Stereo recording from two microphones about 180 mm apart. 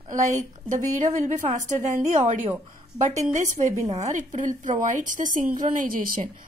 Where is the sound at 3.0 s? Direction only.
40° right (ahead or behind).